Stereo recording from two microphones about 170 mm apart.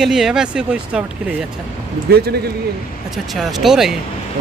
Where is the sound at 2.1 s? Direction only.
70° right (ahead or behind).